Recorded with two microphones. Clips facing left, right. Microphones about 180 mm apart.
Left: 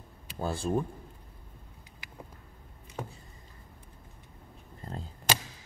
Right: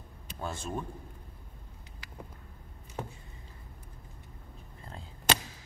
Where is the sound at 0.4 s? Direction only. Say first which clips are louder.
Left 5 dB; 35° left (ahead or behind).